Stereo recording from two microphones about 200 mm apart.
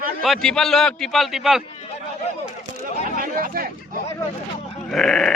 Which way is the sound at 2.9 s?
35° left (ahead or behind).